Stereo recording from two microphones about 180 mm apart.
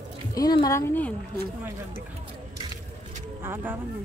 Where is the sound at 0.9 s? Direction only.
10° left (ahead or behind).